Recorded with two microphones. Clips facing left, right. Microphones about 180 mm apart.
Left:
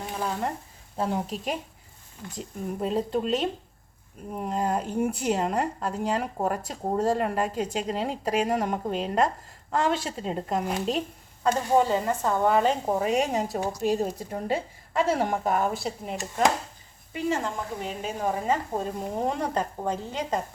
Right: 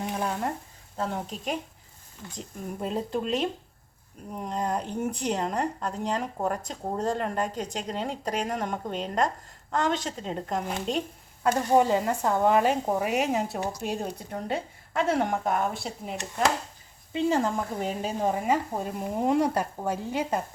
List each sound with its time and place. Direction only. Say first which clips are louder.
0.2 s speech: even; centre (ahead or behind)
11.4 s speech: even; 15° right (ahead or behind); by 16.2 s centre (ahead or behind)
17.1 s a woman's voice: right 3 dB; 25° right (ahead or behind)
17.4 s speech: right 3 dB; 40° right (ahead or behind)
18.4 s speech: even; 10° right (ahead or behind)